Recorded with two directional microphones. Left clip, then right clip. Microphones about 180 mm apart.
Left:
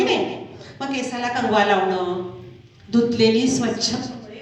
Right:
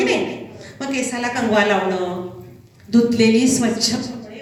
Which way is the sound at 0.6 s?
25° left (ahead or behind).